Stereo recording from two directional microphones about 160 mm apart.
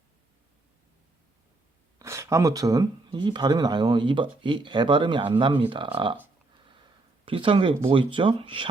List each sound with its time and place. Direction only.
2.0 s speech: 20° right (ahead or behind)
7.3 s speech: 35° right (ahead or behind)